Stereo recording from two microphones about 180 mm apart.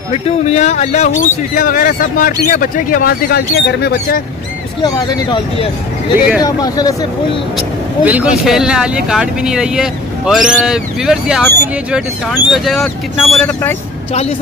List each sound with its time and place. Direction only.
0.1 s speech: 35° left (ahead or behind); by 4.2 s 60° left (ahead or behind)
4.8 s speech: 20° left (ahead or behind)
6.1 s speech: 10° right (ahead or behind)
6.4 s speech: 20° left (ahead or behind)
7.5 s speech: 10° right (ahead or behind)